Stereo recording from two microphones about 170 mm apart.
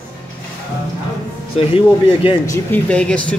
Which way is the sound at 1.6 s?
35° left (ahead or behind).